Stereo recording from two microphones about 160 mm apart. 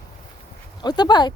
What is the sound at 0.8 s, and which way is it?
Speech, 25° left (ahead or behind).